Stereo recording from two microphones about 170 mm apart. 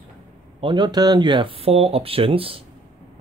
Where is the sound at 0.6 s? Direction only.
25° right (ahead or behind).